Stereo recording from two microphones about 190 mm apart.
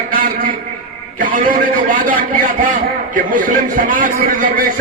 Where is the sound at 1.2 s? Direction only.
45° right (ahead or behind).